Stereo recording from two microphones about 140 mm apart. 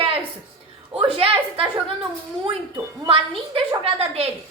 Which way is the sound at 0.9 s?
40° right (ahead or behind).